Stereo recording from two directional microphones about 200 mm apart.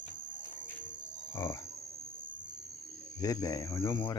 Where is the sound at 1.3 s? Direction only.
15° left (ahead or behind).